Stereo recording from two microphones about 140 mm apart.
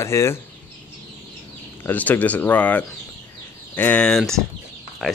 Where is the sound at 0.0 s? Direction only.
20° left (ahead or behind).